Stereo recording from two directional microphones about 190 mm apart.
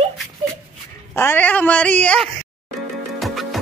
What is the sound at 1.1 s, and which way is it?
Speech, 10° left (ahead or behind).